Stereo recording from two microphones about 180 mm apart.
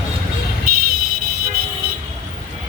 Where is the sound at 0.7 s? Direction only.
55° right (ahead or behind).